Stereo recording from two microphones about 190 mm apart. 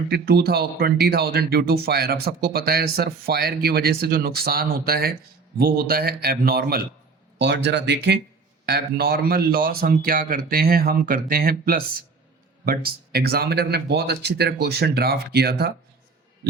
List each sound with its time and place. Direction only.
0.1 s speech: 55° right (ahead or behind)